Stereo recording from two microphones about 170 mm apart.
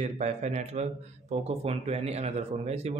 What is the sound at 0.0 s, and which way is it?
Speech, 40° right (ahead or behind).